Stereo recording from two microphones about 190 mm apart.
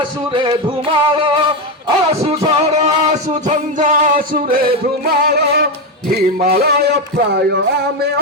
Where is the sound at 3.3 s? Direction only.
40° right (ahead or behind).